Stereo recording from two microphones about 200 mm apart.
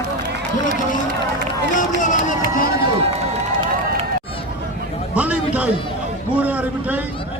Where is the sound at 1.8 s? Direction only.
40° left (ahead or behind).